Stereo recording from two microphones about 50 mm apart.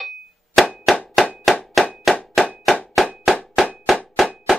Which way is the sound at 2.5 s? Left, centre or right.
Centre.